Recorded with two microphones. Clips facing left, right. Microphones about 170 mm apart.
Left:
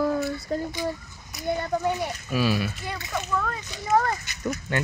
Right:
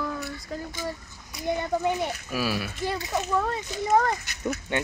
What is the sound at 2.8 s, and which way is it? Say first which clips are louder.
Speech: right 4 dB; 30° right (ahead or behind).